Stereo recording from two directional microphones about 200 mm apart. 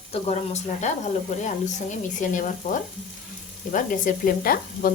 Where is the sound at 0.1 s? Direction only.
35° left (ahead or behind).